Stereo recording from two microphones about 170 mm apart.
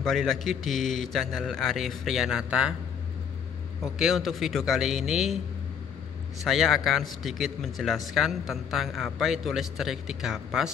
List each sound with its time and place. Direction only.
0.0 s speech: centre (ahead or behind)
3.8 s speech: centre (ahead or behind)
6.4 s speech: centre (ahead or behind)